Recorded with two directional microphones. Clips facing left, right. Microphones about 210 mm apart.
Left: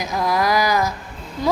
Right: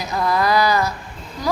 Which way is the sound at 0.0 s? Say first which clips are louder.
Even; 10° left (ahead or behind).